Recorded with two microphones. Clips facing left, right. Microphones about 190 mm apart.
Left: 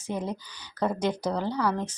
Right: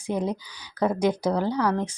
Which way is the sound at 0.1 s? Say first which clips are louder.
Right 5 dB; 15° right (ahead or behind).